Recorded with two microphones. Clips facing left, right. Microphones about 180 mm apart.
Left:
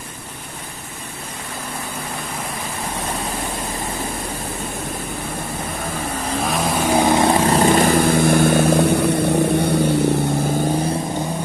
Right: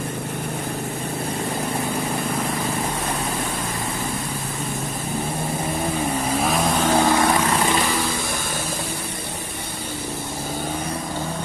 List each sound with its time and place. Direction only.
6.4 s vehicle: centre (ahead or behind)
6.9 s vehicle: 20° left (ahead or behind); by 9.8 s 70° left (ahead or behind)